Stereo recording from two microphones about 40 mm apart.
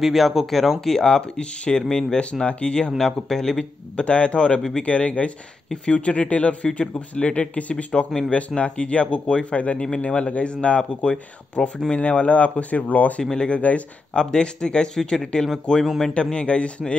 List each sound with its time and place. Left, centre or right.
0.0 s speech: centre; by 2.9 s left
3.0 s speech: centre
3.9 s speech: left
9.8 s speech: centre
10.0 s speech: left
13.2 s speech: centre
13.5 s speech: left
14.1 s speech: left
16.3 s speech: left